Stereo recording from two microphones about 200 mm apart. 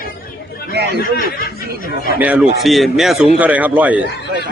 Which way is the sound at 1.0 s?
45° left (ahead or behind).